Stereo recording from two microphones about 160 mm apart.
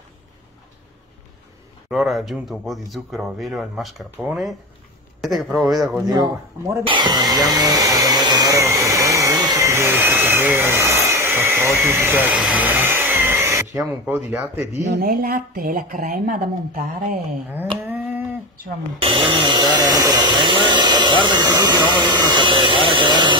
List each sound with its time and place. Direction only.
1.9 s speech: centre (ahead or behind)
6.9 s vacuum cleaner: 25° right (ahead or behind)
13.7 s speech: 10° right (ahead or behind)
15.0 s speech: 70° right (ahead or behind)
17.7 s livestock: 10° right (ahead or behind)
18.9 s chainsaw: 35° right (ahead or behind)